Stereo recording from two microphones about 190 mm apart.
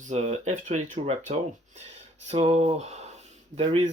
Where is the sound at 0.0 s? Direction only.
35° right (ahead or behind).